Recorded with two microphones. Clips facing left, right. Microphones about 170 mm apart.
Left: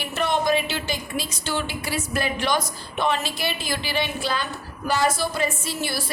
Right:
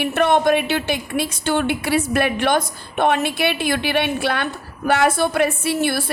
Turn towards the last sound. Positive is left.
turn(degrees=-60)  # may be behind; listen again after turning